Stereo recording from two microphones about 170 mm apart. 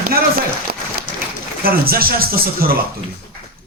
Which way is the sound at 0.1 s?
60° right (ahead or behind).